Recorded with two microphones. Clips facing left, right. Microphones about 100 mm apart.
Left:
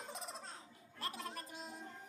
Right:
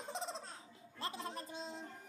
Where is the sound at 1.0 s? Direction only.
25° right (ahead or behind).